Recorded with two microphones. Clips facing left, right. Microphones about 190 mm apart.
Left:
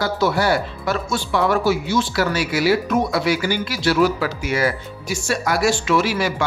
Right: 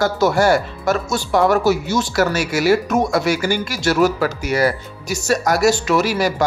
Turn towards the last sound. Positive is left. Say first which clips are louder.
# right 2 dB
turn(degrees=-40)  # may be behind; listen again after turning